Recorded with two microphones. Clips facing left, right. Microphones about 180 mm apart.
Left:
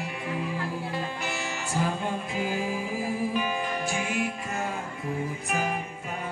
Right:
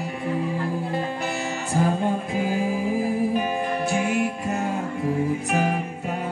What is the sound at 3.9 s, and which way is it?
Music, 55° right (ahead or behind).